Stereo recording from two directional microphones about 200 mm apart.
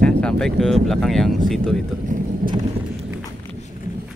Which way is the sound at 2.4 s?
45° right (ahead or behind).